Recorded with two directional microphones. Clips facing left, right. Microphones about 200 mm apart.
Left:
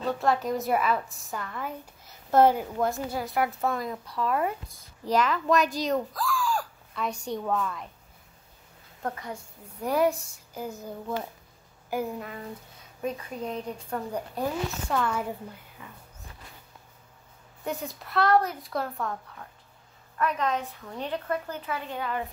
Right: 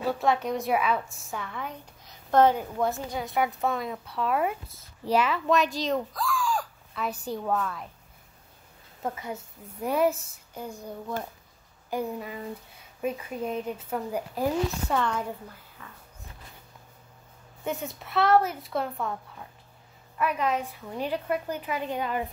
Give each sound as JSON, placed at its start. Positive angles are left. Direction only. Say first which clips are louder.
{"t": 0.0, "sound": "a woman's voice", "louder": "even", "side_deg": 0}
{"t": 9.0, "sound": "a woman's voice", "louder": "right 1 dB", "side_deg": -5}
{"t": 15.8, "sound": "music", "louder": "left 1 dB", "side_deg": 15}
{"t": 17.6, "sound": "a woman's voice", "louder": "right 1 dB", "side_deg": 0}